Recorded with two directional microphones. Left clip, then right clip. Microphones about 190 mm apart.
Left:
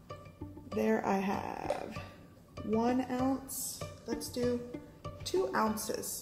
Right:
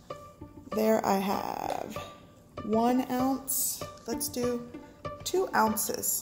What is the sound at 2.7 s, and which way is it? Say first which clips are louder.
Speech: right 5 dB; 45° right (ahead or behind).